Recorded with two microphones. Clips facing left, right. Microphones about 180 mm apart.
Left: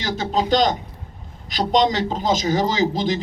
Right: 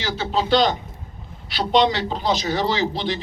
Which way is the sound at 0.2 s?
40° left (ahead or behind).